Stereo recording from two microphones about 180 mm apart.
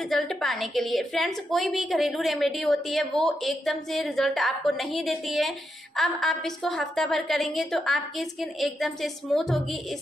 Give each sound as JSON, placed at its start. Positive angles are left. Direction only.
{"t": 0.0, "sound": "a woman's voice", "side_deg": 0}